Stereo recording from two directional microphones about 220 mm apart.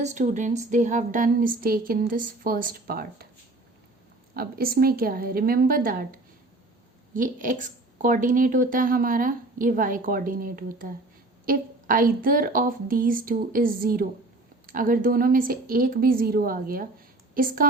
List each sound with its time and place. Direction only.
0.0 s speech: 35° right (ahead or behind)
4.4 s speech: 40° right (ahead or behind)